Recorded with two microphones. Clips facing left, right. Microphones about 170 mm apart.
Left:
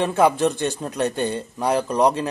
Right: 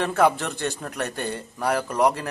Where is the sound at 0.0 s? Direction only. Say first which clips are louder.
Left 3 dB; 15° left (ahead or behind).